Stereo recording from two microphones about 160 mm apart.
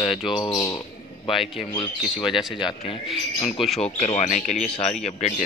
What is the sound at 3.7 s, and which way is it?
Speech, 40° left (ahead or behind).